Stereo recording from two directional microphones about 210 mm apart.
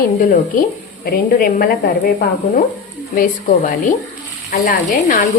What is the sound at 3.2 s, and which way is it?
A woman's voice, 35° left (ahead or behind).